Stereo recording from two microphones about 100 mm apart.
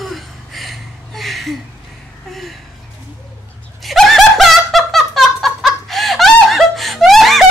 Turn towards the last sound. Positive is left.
turn(degrees=0)  # may be behind; listen again after turning